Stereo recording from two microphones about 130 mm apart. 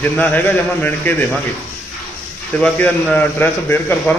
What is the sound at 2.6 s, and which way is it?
A man's voice, 10° left (ahead or behind).